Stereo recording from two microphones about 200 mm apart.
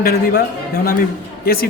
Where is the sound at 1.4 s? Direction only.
50° left (ahead or behind).